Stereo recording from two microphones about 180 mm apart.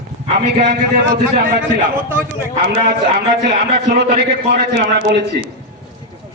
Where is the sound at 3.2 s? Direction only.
70° right (ahead or behind).